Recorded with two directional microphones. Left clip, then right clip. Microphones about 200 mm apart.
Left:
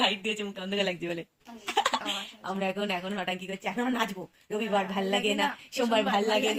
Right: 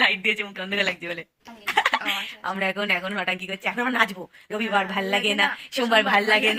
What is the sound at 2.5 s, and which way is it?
A woman's voice, 5° right (ahead or behind).